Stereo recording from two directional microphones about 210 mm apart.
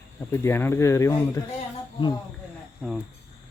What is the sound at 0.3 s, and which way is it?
Speech, 10° left (ahead or behind).